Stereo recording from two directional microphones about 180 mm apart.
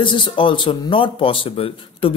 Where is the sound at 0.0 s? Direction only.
25° left (ahead or behind).